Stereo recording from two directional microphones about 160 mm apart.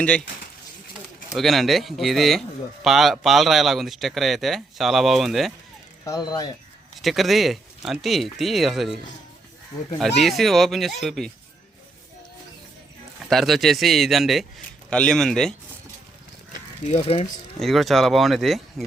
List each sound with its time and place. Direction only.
1.3 s speech: centre (ahead or behind)
6.1 s speech: 25° left (ahead or behind)
7.0 s speech: centre (ahead or behind)
10.2 s speech: centre (ahead or behind)
13.3 s speech: centre (ahead or behind)
16.8 s speech: 40° left (ahead or behind)
17.6 s speech: centre (ahead or behind)